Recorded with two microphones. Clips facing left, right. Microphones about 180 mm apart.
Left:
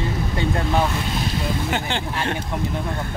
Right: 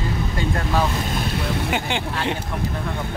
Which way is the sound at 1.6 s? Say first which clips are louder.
Right 1 dB; 10° right (ahead or behind).